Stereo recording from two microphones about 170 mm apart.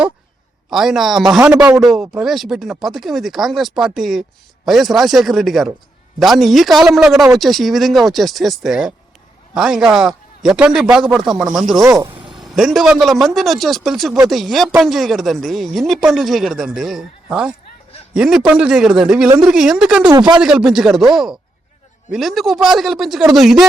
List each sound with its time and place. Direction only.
0.7 s speech: centre (ahead or behind)
12.0 s vehicle: 30° right (ahead or behind)
12.4 s speech: centre (ahead or behind)
20.1 s speech: 25° right (ahead or behind)
20.4 s speech: 5° right (ahead or behind)